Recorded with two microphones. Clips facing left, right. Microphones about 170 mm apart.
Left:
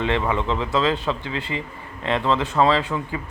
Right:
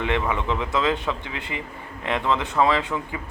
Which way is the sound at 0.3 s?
20° left (ahead or behind).